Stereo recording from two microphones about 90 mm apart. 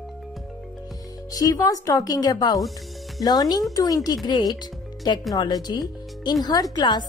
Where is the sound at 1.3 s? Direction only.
40° left (ahead or behind).